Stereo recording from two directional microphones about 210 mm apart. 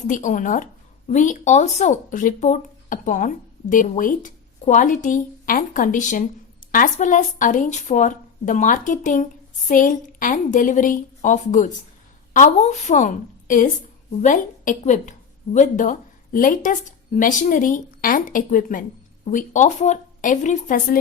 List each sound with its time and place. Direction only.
0.1 s speech: 35° left (ahead or behind)